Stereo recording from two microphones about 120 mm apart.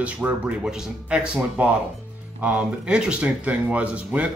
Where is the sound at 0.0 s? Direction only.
10° right (ahead or behind).